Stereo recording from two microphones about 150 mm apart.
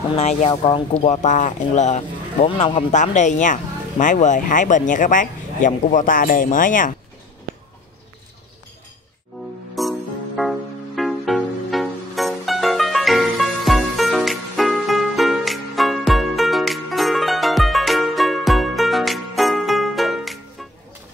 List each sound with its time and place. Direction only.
0.1 s speech: 50° left (ahead or behind)
2.9 s speech: 55° left (ahead or behind)
9.8 s music: centre (ahead or behind)